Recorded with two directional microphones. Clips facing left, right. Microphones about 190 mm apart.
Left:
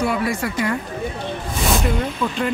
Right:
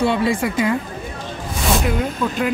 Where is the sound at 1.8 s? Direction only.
5° right (ahead or behind).